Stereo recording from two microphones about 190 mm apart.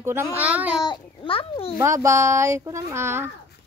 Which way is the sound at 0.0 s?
15° right (ahead or behind).